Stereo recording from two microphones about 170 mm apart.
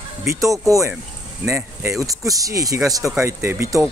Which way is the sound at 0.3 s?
20° right (ahead or behind).